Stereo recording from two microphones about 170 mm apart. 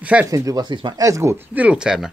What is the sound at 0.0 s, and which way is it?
Speech, 10° right (ahead or behind).